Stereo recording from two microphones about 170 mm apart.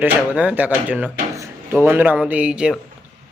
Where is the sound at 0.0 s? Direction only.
10° right (ahead or behind).